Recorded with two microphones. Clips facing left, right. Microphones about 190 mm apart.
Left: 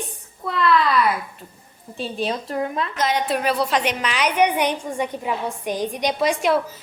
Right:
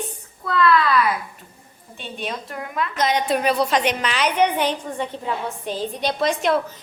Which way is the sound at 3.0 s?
5° left (ahead or behind).